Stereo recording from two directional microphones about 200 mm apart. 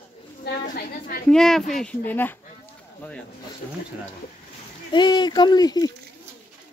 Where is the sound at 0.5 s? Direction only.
50° left (ahead or behind).